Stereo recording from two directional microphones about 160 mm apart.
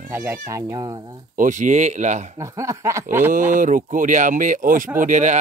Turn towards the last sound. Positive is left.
turn(degrees=-50)  # may be behind; listen again after turning